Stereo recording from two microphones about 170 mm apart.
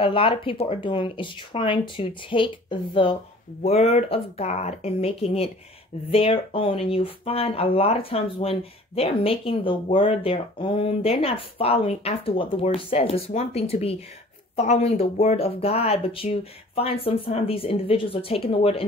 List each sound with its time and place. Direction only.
0.0 s speech: 30° left (ahead or behind)